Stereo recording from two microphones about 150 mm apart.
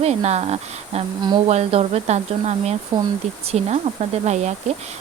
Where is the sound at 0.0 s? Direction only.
45° right (ahead or behind).